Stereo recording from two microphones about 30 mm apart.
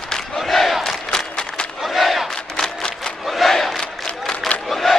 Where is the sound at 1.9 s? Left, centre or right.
Centre.